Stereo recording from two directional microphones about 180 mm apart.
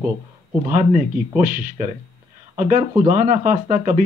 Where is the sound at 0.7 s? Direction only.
45° right (ahead or behind).